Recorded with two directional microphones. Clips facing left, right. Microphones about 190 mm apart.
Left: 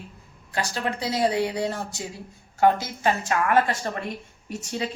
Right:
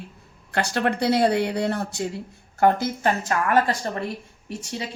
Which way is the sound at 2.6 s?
50° right (ahead or behind).